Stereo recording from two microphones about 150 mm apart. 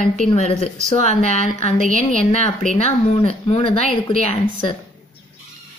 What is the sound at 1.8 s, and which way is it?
Speech, 60° right (ahead or behind).